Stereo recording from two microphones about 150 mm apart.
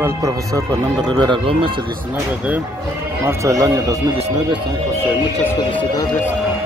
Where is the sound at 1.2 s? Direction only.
35° right (ahead or behind).